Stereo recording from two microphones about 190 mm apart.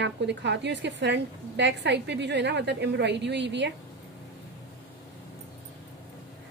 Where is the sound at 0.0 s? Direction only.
65° right (ahead or behind).